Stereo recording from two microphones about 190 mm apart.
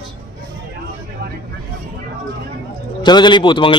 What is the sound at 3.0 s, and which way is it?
Speech, 25° left (ahead or behind).